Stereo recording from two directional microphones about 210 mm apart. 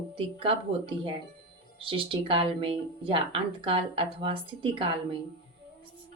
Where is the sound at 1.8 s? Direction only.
25° right (ahead or behind).